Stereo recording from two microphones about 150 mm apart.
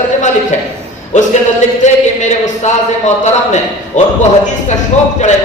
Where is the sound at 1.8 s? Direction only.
50° left (ahead or behind).